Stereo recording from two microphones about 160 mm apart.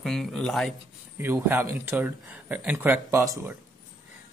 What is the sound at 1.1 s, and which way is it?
Speech, 15° right (ahead or behind).